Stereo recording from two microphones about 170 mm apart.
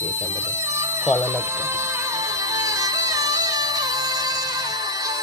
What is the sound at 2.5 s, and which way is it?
Music, 20° right (ahead or behind).